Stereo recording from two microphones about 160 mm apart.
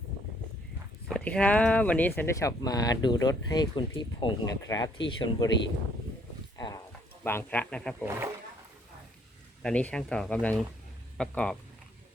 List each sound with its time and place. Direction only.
1.0 s speech: 5° left (ahead or behind); by 5.5 s 30° left (ahead or behind)
6.6 s a sound: 25° left (ahead or behind)
7.3 s speech: 10° left (ahead or behind)
9.6 s speech: 5° left (ahead or behind)